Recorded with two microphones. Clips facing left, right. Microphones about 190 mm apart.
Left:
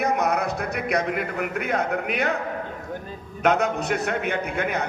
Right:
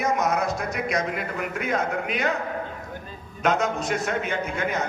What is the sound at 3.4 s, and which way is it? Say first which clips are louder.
Speech: left 2 dB; 60° left (ahead or behind).